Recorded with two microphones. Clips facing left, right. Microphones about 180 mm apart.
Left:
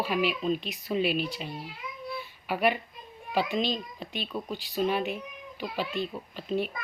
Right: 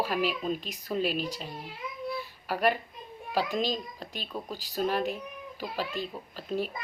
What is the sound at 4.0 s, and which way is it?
Speech, 40° right (ahead or behind).